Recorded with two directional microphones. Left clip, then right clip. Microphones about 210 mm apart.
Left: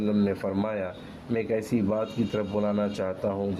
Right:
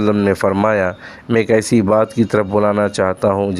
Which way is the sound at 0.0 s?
30° right (ahead or behind).